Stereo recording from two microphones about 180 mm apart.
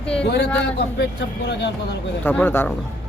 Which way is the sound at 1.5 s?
70° left (ahead or behind).